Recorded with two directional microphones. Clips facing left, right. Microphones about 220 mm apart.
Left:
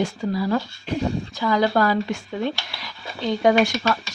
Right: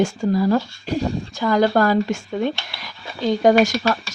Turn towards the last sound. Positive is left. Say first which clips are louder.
# right 3 dB
turn(degrees=-45)  # may be behind; listen again after turning